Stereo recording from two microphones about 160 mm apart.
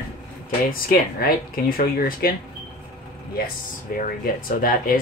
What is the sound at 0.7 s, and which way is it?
Speech, 65° left (ahead or behind).